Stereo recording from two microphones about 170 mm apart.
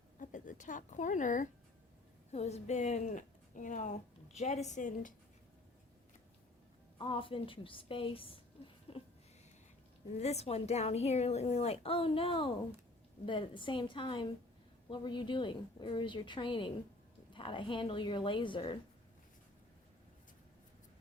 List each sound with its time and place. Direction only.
0.2 s a woman's voice: 50° left (ahead or behind)
7.0 s a woman's voice: 30° left (ahead or behind)
10.2 s a woman's voice: 40° left (ahead or behind)